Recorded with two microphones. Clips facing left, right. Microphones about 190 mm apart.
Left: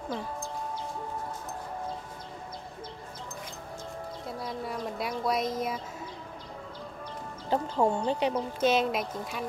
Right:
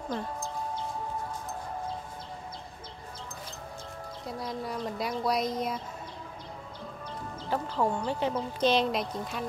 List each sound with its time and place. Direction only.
4.3 s speech: centre (ahead or behind)
7.4 s speech: 25° left (ahead or behind)
8.5 s speech: 5° left (ahead or behind)